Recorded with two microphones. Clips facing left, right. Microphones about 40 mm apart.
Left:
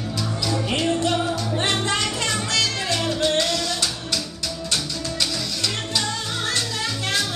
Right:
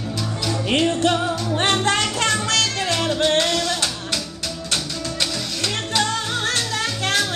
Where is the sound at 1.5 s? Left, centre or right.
Right.